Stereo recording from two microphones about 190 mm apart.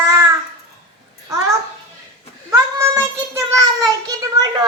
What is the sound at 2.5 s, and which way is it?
Child singing, 15° right (ahead or behind).